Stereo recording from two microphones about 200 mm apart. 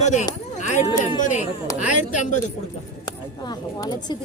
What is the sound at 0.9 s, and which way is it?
Speech, 25° left (ahead or behind).